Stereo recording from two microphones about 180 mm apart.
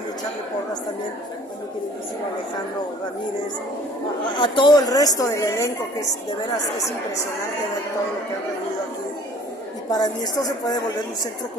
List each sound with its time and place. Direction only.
4.3 s a woman's voice: 25° left (ahead or behind)
9.8 s a woman's voice: 20° left (ahead or behind)